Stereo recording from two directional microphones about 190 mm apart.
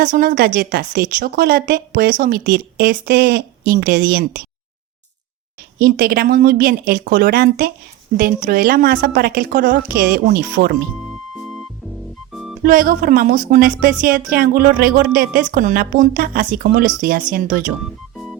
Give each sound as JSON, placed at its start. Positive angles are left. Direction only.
{"t": 0.0, "sound": "a woman's voice", "side_deg": -45}
{"t": 5.8, "sound": "a woman's voice", "side_deg": -55}
{"t": 12.3, "sound": "music", "side_deg": 0}
{"t": 12.6, "sound": "a woman's voice", "side_deg": -50}